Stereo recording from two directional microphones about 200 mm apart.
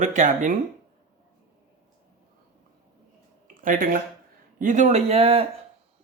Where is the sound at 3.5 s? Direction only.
40° right (ahead or behind).